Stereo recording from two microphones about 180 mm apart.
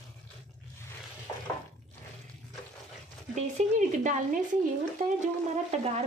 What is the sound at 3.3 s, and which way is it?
Speech, 40° right (ahead or behind).